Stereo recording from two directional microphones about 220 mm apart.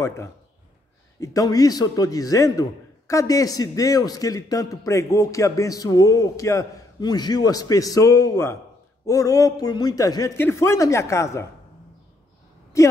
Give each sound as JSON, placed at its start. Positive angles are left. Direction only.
{"t": 1.2, "sound": "a man's voice", "side_deg": 15}
{"t": 12.7, "sound": "a man's voice", "side_deg": 15}